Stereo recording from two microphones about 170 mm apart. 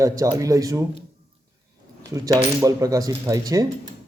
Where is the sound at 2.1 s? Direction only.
20° right (ahead or behind).